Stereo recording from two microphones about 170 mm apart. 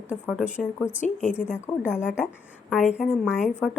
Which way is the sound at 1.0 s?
45° left (ahead or behind).